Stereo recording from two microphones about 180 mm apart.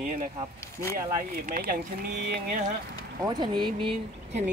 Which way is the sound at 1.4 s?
50° right (ahead or behind).